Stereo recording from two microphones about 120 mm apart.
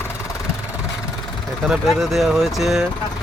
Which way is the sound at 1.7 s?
Centre (ahead or behind).